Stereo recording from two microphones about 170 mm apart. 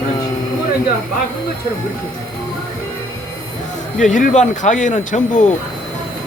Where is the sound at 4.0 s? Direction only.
50° left (ahead or behind).